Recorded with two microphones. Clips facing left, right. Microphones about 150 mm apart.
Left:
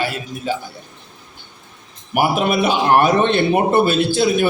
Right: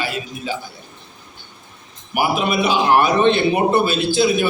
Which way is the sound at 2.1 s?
55° left (ahead or behind).